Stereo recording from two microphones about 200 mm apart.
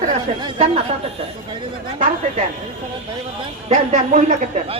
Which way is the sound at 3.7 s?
35° right (ahead or behind).